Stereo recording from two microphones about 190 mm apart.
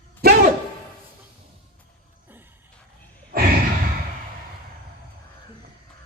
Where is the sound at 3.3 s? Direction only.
50° right (ahead or behind).